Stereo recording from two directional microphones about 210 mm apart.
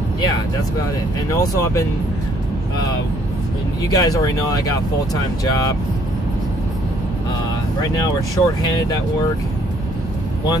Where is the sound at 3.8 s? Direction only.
20° left (ahead or behind).